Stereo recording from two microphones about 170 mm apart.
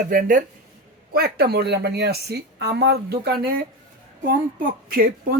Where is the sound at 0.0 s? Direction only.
55° right (ahead or behind).